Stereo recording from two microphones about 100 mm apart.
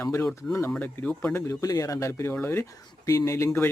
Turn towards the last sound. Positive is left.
turn(degrees=25)  # may be behind; listen again after turning